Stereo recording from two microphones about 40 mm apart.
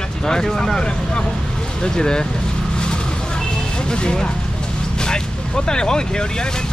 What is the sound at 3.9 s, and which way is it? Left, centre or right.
Speech, left.